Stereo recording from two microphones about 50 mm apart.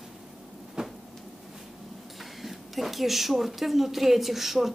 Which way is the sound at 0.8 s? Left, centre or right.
Centre.